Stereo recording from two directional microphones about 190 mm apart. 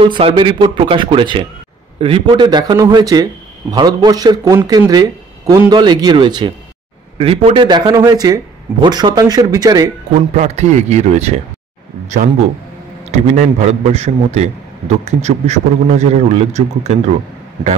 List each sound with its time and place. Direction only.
0.0 s speech: 30° right (ahead or behind)
10.3 s a man's voice: 40° right (ahead or behind)
13.1 s a man's voice: 35° right (ahead or behind)